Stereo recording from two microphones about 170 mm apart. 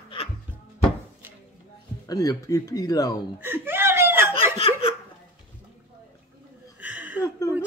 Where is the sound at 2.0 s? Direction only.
20° left (ahead or behind).